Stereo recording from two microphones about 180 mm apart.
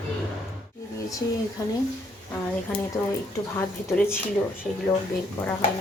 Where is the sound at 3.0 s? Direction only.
20° left (ahead or behind).